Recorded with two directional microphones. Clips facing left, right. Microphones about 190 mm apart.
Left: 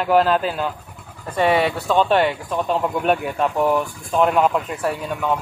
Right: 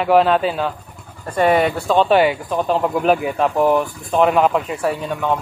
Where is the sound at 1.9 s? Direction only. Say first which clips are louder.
Right 3 dB; 5° right (ahead or behind).